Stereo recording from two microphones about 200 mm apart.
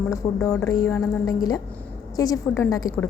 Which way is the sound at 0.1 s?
15° left (ahead or behind).